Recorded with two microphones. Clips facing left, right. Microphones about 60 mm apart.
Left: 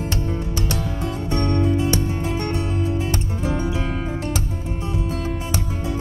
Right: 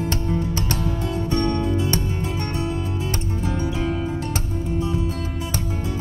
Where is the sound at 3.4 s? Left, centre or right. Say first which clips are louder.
Left 1 dB; left.